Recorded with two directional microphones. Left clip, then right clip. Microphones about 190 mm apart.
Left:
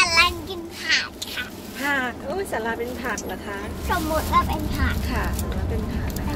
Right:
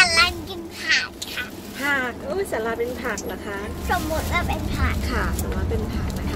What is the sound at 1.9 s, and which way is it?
Speech, 30° right (ahead or behind).